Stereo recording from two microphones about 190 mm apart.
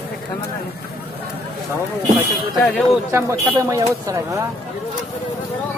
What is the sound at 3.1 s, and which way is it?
Speech, 15° right (ahead or behind).